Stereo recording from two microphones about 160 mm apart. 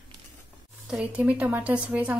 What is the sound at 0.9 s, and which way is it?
A woman's voice, 10° right (ahead or behind).